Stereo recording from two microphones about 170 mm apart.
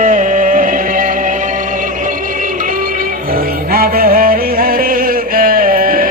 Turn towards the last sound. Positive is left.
turn(degrees=-55)  # may be behind; listen again after turning